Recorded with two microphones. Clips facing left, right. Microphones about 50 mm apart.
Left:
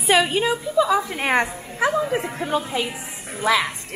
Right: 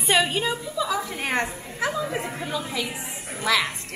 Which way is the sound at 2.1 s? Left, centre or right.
Centre.